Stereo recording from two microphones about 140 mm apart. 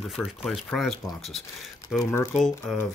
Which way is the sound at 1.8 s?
25° left (ahead or behind).